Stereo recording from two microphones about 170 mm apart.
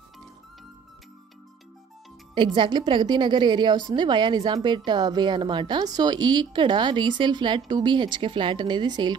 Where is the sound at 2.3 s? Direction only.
30° right (ahead or behind).